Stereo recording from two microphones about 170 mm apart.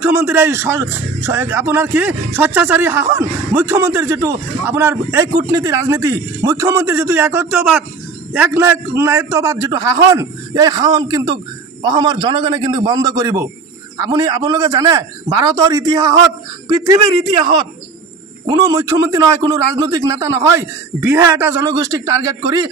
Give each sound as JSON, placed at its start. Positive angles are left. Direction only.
{"t": 0.0, "sound": "a man's voice", "side_deg": -10}